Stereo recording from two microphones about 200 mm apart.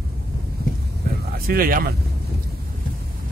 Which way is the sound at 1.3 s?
45° right (ahead or behind).